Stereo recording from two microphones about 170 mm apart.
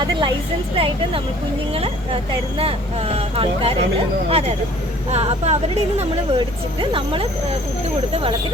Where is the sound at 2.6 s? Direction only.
35° right (ahead or behind).